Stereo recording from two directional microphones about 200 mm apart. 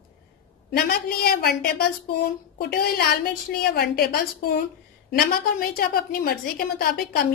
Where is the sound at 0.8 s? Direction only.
50° left (ahead or behind).